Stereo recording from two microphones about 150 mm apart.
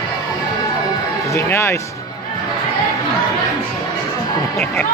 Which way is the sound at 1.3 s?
15° left (ahead or behind).